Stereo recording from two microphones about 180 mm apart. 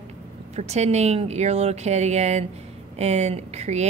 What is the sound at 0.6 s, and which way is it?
Speech, 40° right (ahead or behind).